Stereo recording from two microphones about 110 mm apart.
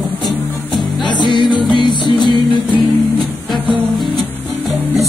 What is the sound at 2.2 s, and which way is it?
Music, 50° right (ahead or behind).